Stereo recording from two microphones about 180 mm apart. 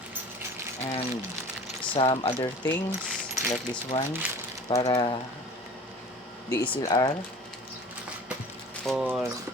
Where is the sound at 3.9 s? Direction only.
30° left (ahead or behind).